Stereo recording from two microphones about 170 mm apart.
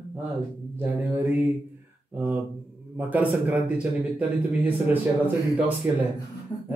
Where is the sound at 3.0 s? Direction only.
10° right (ahead or behind).